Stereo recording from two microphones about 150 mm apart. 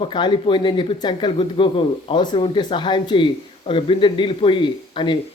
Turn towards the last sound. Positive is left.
turn(degrees=30)  # may be behind; listen again after turning